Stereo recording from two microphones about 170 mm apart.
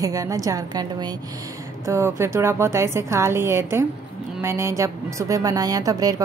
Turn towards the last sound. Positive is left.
turn(degrees=-20)  # may be behind; listen again after turning